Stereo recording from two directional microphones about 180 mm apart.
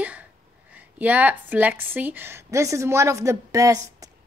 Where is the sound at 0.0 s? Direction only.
10° right (ahead or behind).